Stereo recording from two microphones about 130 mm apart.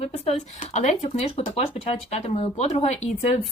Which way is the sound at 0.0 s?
55° left (ahead or behind).